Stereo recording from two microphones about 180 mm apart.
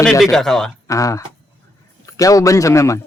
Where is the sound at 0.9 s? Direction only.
20° left (ahead or behind).